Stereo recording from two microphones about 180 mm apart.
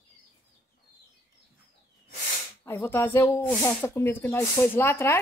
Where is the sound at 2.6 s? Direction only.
15° left (ahead or behind).